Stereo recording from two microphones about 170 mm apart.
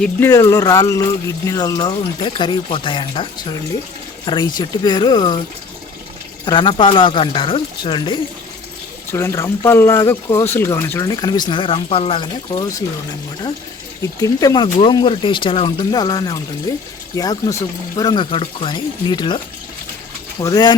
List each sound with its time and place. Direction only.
0.3 s speech: 20° left (ahead or behind)
6.4 s speech: 30° left (ahead or behind)
9.1 s speech: 15° left (ahead or behind); by 12.6 s 30° left (ahead or behind)
14.2 s speech: 20° left (ahead or behind)
20.4 s speech: 25° left (ahead or behind)